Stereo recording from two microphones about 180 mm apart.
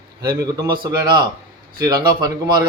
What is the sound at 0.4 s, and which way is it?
A man's voice, 25° right (ahead or behind).